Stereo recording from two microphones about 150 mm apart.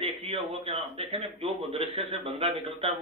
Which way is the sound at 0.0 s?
40° right (ahead or behind).